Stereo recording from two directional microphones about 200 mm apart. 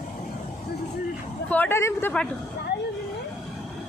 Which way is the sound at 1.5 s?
10° left (ahead or behind).